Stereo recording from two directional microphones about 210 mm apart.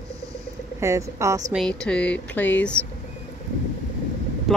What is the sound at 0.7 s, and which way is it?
Speech, 15° right (ahead or behind).